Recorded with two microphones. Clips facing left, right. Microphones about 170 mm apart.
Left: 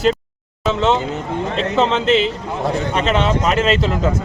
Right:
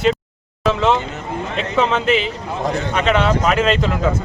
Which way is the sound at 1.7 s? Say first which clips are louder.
Left 1 dB; centre (ahead or behind).